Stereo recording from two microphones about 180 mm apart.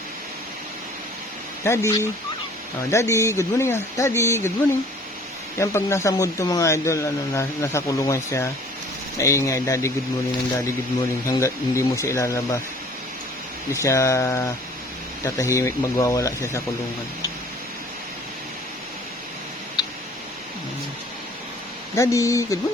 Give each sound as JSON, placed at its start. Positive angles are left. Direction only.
{"t": 1.6, "sound": "speech", "side_deg": 15}
{"t": 5.5, "sound": "speech", "side_deg": 15}
{"t": 11.3, "sound": "speech", "side_deg": 15}
{"t": 13.7, "sound": "speech", "side_deg": 15}
{"t": 21.9, "sound": "speech", "side_deg": 15}